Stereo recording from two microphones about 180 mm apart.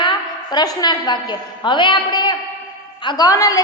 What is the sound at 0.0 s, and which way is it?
A woman's voice, 25° left (ahead or behind).